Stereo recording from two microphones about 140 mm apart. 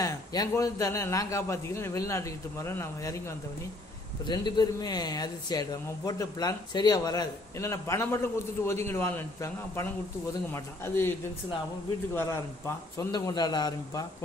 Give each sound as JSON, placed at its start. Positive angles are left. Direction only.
{"t": 0.0, "sound": "speech", "side_deg": 25}
{"t": 12.2, "sound": "speech", "side_deg": 20}
{"t": 13.1, "sound": "speech", "side_deg": 30}